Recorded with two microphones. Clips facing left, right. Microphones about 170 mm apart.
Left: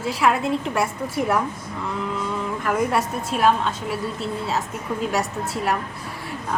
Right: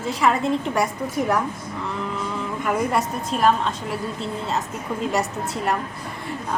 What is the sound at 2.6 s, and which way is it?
Speech, centre (ahead or behind).